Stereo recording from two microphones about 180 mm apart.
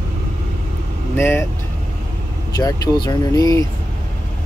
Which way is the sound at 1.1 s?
10° left (ahead or behind).